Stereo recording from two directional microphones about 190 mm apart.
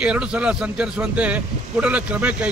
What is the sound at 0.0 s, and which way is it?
A man's voice, 5° right (ahead or behind).